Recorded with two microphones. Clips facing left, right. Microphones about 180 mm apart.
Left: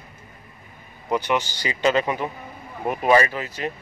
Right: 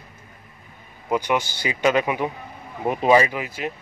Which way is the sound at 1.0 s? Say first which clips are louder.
Right 1 dB; 15° right (ahead or behind).